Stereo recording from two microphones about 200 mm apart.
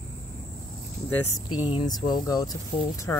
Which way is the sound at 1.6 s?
25° left (ahead or behind).